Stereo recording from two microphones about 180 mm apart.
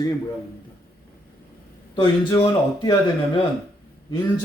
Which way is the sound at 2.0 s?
25° left (ahead or behind).